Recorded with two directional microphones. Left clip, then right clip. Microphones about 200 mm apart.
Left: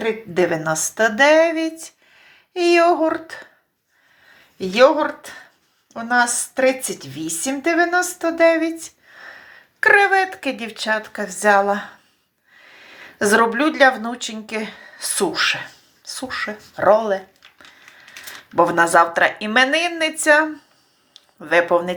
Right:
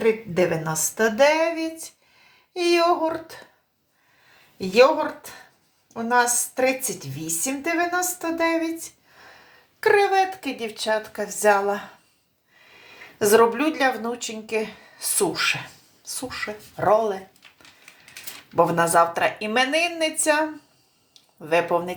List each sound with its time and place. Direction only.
0.6 s a woman's voice: 20° left (ahead or behind)
4.5 s a woman's voice: 20° left (ahead or behind)
16.5 s speech: 35° left (ahead or behind)
16.9 s a woman's voice: 15° left (ahead or behind)
18.7 s a woman's voice: 15° left (ahead or behind)
21.4 s a woman's voice: 15° left (ahead or behind)